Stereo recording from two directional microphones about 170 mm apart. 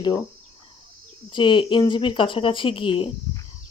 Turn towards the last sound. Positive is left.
turn(degrees=30)  # may be behind; listen again after turning